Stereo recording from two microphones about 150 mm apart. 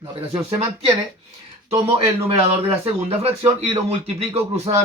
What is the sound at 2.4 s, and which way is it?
Speech, 40° right (ahead or behind).